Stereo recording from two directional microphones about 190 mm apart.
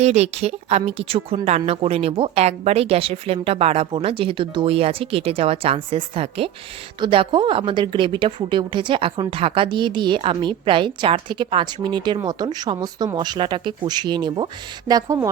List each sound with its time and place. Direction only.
0.0 s a woman's voice: 35° right (ahead or behind); by 15.3 s 20° right (ahead or behind)